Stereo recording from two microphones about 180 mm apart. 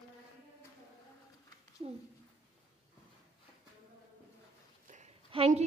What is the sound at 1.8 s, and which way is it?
Speech, 30° right (ahead or behind).